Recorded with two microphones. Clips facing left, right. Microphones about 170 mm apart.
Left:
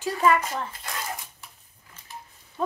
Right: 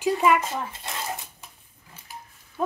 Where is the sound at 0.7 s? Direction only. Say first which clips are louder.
Right 1 dB; 25° right (ahead or behind).